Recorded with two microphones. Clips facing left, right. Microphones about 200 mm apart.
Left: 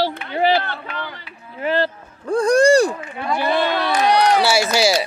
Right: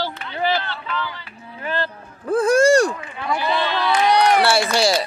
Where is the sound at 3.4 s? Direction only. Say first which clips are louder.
Left 3 dB; 55° left (ahead or behind).